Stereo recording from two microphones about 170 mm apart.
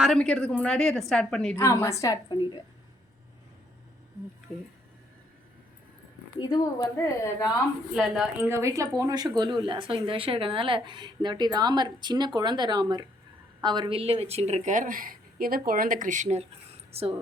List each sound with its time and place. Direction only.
0.0 s a woman's voice: 5° left (ahead or behind)
1.5 s a woman's voice: 15° left (ahead or behind)
4.5 s a woman's voice: centre (ahead or behind)
6.4 s a woman's voice: 25° left (ahead or behind)
7.9 s a woman's voice: centre (ahead or behind)
8.4 s a woman's voice: 15° right (ahead or behind); by 17.2 s 35° right (ahead or behind)